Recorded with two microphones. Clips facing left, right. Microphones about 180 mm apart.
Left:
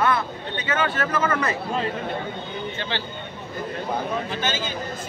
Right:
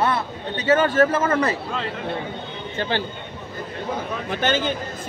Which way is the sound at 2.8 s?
45° right (ahead or behind).